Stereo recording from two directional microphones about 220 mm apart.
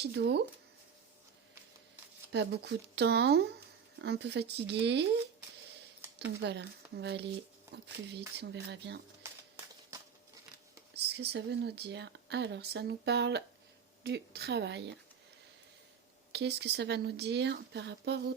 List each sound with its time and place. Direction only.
0.0 s speech: 50° right (ahead or behind)
2.3 s speech: 50° right (ahead or behind)
6.4 s speech: 50° right (ahead or behind)
7.7 s speech: 10° right (ahead or behind)
8.4 s speech: 50° right (ahead or behind)
10.9 s speech: 50° right (ahead or behind)
16.3 s speech: 50° right (ahead or behind)